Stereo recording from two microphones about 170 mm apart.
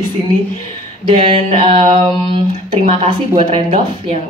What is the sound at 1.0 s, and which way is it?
A woman's voice, 30° right (ahead or behind).